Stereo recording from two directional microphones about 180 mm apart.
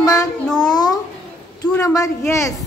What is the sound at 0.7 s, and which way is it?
Babbling, 20° left (ahead or behind).